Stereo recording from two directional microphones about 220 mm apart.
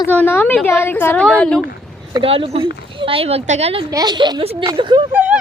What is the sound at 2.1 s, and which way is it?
Speech, 25° right (ahead or behind).